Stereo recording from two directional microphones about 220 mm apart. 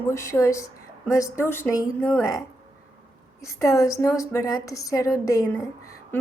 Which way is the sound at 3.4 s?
15° left (ahead or behind).